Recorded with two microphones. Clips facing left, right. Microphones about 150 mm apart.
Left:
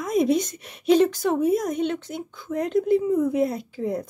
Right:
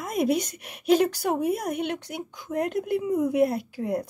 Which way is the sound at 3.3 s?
60° right (ahead or behind).